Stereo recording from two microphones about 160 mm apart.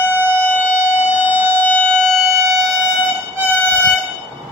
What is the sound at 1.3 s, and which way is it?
Civil defense siren, 10° left (ahead or behind).